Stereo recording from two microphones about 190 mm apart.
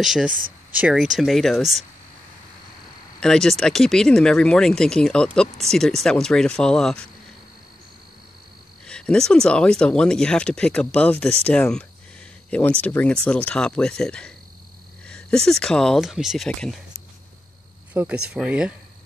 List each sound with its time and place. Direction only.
0.0 s speech: centre (ahead or behind)
0.3 s speech: 45° right (ahead or behind)
0.7 s speech: 5° right (ahead or behind)
3.2 s speech: centre (ahead or behind)
8.8 s speech: 5° left (ahead or behind)
17.9 s speech: 5° right (ahead or behind)